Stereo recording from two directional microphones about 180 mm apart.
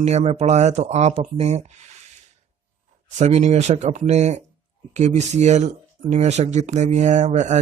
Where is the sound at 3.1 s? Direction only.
40° right (ahead or behind).